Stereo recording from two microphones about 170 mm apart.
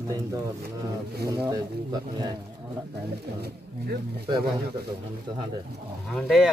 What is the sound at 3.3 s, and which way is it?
Speech, 70° right (ahead or behind).